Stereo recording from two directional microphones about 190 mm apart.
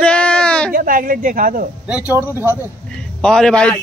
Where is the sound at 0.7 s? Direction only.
45° right (ahead or behind).